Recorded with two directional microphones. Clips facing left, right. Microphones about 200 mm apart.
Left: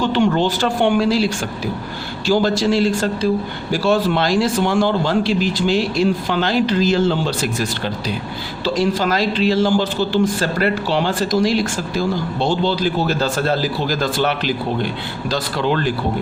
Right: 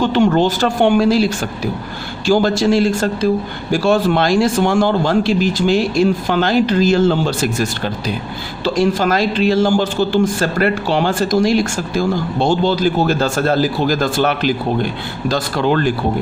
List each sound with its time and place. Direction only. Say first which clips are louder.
0.0 s a man's voice: right 3 dB; 45° right (ahead or behind)